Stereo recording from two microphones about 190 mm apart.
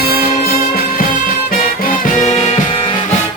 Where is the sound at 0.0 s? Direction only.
50° left (ahead or behind).